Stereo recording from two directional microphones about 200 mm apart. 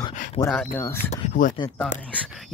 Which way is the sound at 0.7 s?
10° left (ahead or behind).